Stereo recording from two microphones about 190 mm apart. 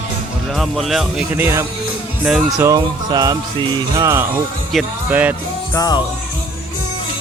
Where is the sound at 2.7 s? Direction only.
20° right (ahead or behind).